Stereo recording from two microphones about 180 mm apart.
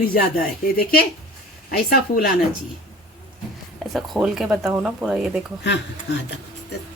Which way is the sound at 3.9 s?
Centre (ahead or behind).